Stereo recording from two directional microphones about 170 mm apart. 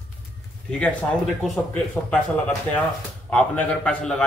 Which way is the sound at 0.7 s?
5° left (ahead or behind).